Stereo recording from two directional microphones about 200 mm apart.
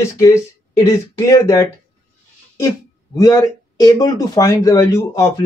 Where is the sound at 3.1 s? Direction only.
20° left (ahead or behind).